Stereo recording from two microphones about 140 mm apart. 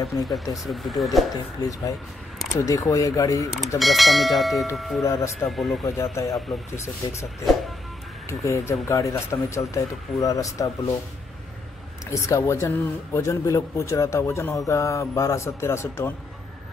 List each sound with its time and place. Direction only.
0.1 s speech: 25° left (ahead or behind)
0.7 s speech: centre (ahead or behind)
1.3 s speech: 25° left (ahead or behind)
3.8 s speech: centre (ahead or behind)
5.0 s speech: 20° left (ahead or behind)
5.5 s speech: centre (ahead or behind)
5.9 s speech: 20° left (ahead or behind)
8.3 s speech: 20° left (ahead or behind)
12.1 s speech: 20° left (ahead or behind)